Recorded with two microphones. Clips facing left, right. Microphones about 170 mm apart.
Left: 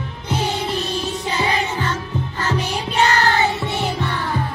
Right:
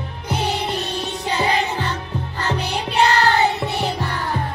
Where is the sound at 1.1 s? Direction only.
35° right (ahead or behind).